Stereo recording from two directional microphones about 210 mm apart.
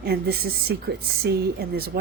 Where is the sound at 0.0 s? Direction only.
50° right (ahead or behind).